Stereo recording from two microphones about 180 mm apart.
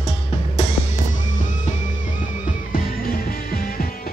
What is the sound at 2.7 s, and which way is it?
Music, 55° left (ahead or behind).